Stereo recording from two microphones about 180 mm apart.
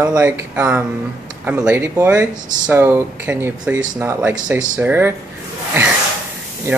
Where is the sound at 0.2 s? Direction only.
10° right (ahead or behind).